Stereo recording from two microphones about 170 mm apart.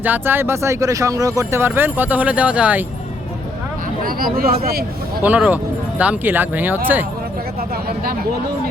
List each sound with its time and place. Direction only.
0.0 s speech: 10° right (ahead or behind)
4.0 s speech: 60° right (ahead or behind)
5.2 s speech: 10° right (ahead or behind)